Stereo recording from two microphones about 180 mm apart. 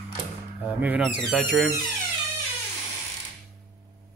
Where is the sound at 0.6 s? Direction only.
10° right (ahead or behind).